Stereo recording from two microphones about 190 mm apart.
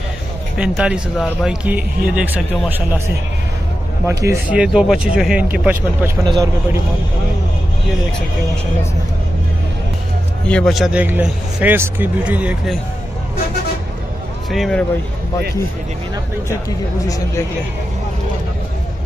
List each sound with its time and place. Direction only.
0.6 s speech: 5° right (ahead or behind)
4.0 s a man's voice: 15° right (ahead or behind)
10.4 s a man's voice: 5° left (ahead or behind)
14.5 s speech: centre (ahead or behind)